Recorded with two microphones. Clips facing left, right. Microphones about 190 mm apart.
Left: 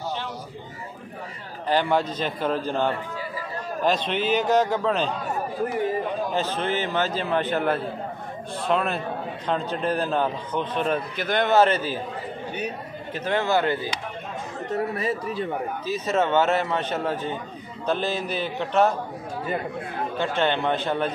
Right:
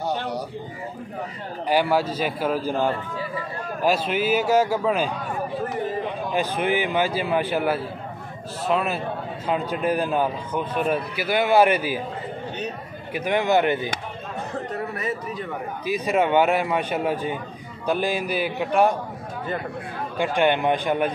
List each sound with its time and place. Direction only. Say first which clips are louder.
1.7 s a man's voice: right 1 dB; 10° right (ahead or behind)
6.3 s a man's voice: right 6 dB; 10° right (ahead or behind)
13.1 s a man's voice: right 3 dB; 15° right (ahead or behind)
14.7 s speech: left 7 dB; 30° left (ahead or behind)
15.8 s a man's voice: right 3 dB; 10° right (ahead or behind)
20.2 s a man's voice: right 4 dB; 15° right (ahead or behind)